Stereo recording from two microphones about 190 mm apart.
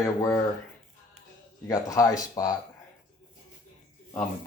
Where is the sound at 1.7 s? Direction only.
20° left (ahead or behind).